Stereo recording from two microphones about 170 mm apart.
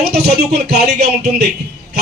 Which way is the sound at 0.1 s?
70° right (ahead or behind).